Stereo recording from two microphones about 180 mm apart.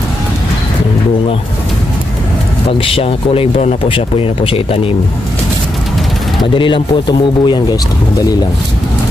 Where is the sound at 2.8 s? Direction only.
30° left (ahead or behind).